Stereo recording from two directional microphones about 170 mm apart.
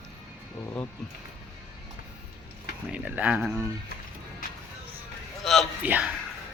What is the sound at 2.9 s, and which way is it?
Speech, 10° right (ahead or behind).